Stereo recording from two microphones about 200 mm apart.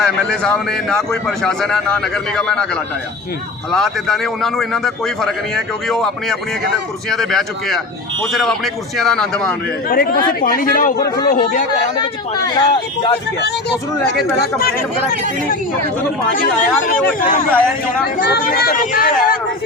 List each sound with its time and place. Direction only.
0.0 s a man's voice: 5° left (ahead or behind)
3.7 s a man's voice: centre (ahead or behind)
9.9 s speech: 45° left (ahead or behind)
11.0 s speech: 20° left (ahead or behind)
11.3 s speech: 45° left (ahead or behind)
11.9 s speech: 20° left (ahead or behind)
13.4 s speech: 55° left (ahead or behind)
16.3 s speech: 45° left (ahead or behind)